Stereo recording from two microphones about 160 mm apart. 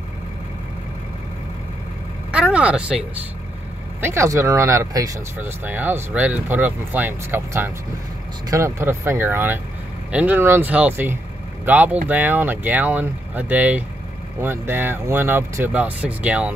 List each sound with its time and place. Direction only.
2.3 s speech: 5° right (ahead or behind)
4.0 s speech: 15° right (ahead or behind)